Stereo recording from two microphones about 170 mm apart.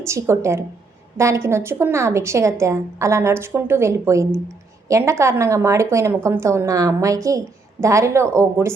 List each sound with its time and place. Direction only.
0.0 s a woman's voice: 15° right (ahead or behind)